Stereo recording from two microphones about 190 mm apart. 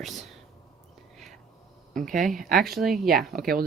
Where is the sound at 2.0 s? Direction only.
Centre (ahead or behind).